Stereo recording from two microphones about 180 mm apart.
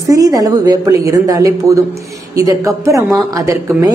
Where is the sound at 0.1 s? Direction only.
20° right (ahead or behind).